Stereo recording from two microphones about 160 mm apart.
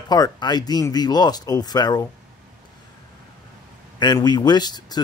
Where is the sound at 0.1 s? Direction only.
25° left (ahead or behind).